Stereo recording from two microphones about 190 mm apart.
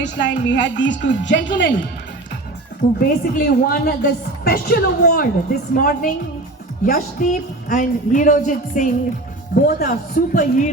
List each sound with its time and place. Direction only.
0.0 s a woman's voice: 65° left (ahead or behind)
3.0 s a woman's voice: 55° left (ahead or behind)